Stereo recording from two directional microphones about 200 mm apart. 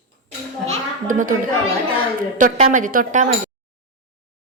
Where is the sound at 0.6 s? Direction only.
35° right (ahead or behind).